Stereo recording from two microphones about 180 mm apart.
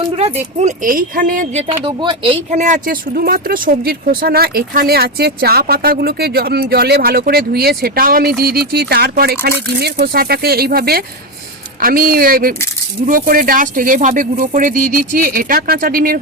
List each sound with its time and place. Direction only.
0.2 s speech: 35° right (ahead or behind)
1.8 s speech: 25° right (ahead or behind); by 16.1 s 50° right (ahead or behind)